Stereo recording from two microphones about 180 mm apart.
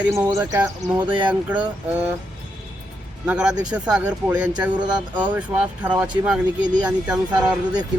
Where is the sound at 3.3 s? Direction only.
5° right (ahead or behind).